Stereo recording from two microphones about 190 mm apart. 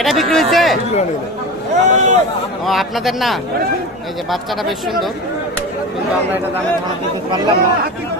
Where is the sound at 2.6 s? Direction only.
Centre (ahead or behind).